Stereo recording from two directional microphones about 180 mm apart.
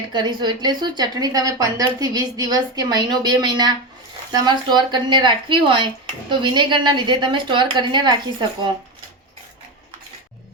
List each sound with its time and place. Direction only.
0.1 s speech: 25° right (ahead or behind)